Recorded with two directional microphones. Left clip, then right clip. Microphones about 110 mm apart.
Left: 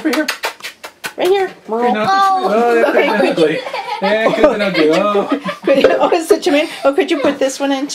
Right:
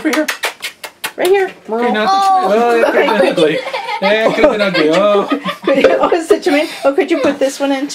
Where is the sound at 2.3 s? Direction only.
30° right (ahead or behind).